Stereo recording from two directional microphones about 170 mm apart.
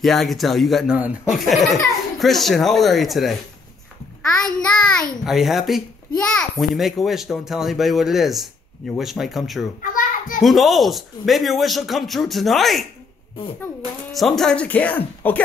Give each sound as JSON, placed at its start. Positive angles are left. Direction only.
{"t": 0.0, "sound": "speech", "side_deg": 0}
{"t": 9.8, "sound": "a sound", "side_deg": 55}
{"t": 10.4, "sound": "speech", "side_deg": 0}
{"t": 14.1, "sound": "speech", "side_deg": 0}